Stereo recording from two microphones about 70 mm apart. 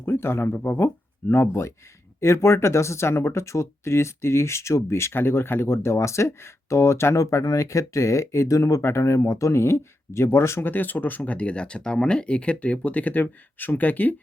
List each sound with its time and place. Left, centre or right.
0.0 s speech: left
10.7 s speech: left